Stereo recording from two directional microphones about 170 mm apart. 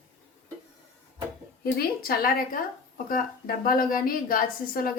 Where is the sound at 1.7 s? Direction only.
65° left (ahead or behind).